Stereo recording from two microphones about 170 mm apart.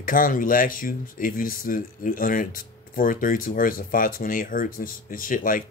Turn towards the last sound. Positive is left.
turn(degrees=55)  # may be behind; listen again after turning